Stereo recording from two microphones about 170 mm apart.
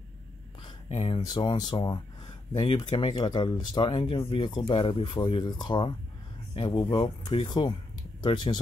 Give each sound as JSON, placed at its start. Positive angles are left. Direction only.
{"t": 0.7, "sound": "speech", "side_deg": 30}